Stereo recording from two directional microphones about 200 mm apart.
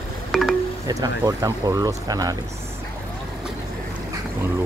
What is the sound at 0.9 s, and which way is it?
Speech, 15° right (ahead or behind).